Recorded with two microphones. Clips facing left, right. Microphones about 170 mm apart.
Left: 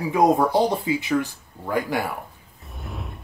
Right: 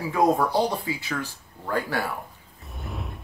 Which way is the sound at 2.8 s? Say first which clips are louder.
Even; centre (ahead or behind).